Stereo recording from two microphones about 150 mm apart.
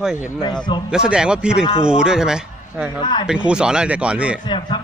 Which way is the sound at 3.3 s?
5° right (ahead or behind).